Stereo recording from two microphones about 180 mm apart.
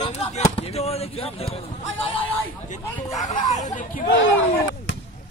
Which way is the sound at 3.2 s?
40° left (ahead or behind).